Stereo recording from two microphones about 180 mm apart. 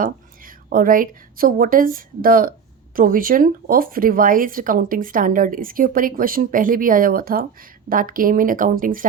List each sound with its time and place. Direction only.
0.0 s a woman's voice: 50° right (ahead or behind)